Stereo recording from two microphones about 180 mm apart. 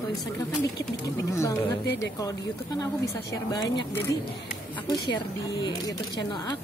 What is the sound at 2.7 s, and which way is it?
Speech, 20° left (ahead or behind).